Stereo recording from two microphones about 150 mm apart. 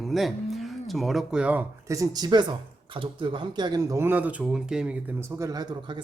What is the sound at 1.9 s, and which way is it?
Speech, 25° right (ahead or behind).